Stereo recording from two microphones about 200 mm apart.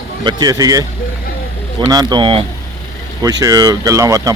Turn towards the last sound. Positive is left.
turn(degrees=-15)  # may be behind; listen again after turning